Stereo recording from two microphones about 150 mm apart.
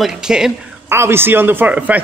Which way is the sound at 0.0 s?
5° right (ahead or behind).